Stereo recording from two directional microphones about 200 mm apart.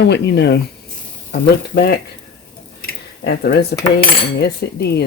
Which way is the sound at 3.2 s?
55° left (ahead or behind).